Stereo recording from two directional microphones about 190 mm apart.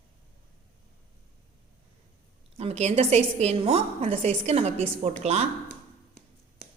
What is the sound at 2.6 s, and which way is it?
A woman's voice, 35° right (ahead or behind).